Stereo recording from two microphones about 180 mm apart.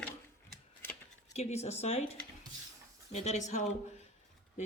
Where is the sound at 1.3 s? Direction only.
35° left (ahead or behind).